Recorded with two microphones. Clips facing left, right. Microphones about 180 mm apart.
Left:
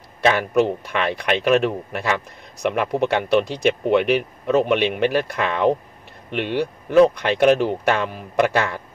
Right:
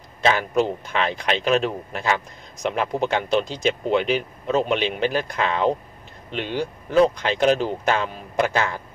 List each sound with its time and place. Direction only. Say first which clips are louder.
0.2 s speech: left 3 dB; 60° left (ahead or behind)